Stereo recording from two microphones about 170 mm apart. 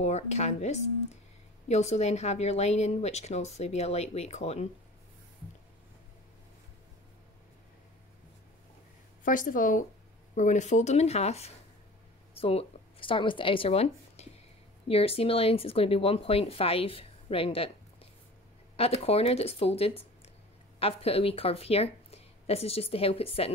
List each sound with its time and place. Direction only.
0.0 s speech: 40° left (ahead or behind)
9.2 s a woman's voice: 50° left (ahead or behind); by 23.5 s 35° left (ahead or behind)